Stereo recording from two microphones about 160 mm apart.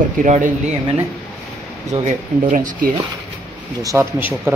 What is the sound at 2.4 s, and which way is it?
Speech, 55° right (ahead or behind).